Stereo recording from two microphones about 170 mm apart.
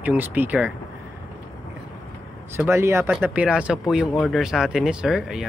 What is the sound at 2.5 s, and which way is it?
Speech, 15° right (ahead or behind).